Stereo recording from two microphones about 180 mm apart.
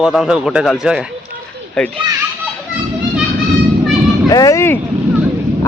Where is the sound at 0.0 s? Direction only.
5° right (ahead or behind).